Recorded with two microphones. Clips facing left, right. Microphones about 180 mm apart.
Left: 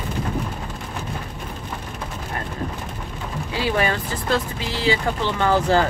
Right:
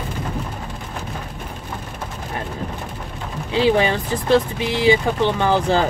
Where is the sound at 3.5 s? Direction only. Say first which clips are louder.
Right 6 dB; 20° right (ahead or behind).